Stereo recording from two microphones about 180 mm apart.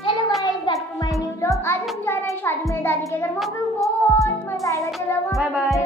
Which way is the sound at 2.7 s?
10° left (ahead or behind).